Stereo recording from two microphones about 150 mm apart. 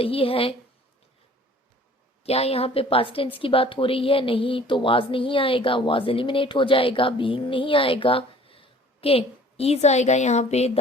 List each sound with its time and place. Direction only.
0.0 s a woman's voice: 40° left (ahead or behind)
2.2 s a woman's voice: 40° left (ahead or behind)